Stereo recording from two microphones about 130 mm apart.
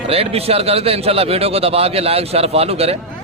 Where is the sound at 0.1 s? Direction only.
50° right (ahead or behind).